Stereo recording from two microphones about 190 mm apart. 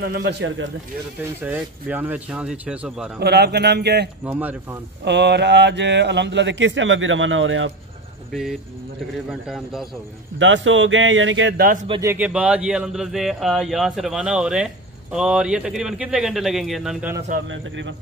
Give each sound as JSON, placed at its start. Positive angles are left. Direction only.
{"t": 0.0, "sound": "speech", "side_deg": -65}
{"t": 1.4, "sound": "speech", "side_deg": -10}
{"t": 3.2, "sound": "speech", "side_deg": -60}
{"t": 4.2, "sound": "speech", "side_deg": -10}
{"t": 5.0, "sound": "speech", "side_deg": -65}
{"t": 8.3, "sound": "speech", "side_deg": 0}
{"t": 10.4, "sound": "speech", "side_deg": -85}
{"t": 11.5, "sound": "speech", "side_deg": -55}
{"t": 11.9, "sound": "speech", "side_deg": -15}
{"t": 17.5, "sound": "speech", "side_deg": -75}